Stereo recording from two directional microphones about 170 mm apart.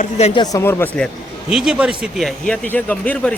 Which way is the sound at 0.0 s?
40° left (ahead or behind).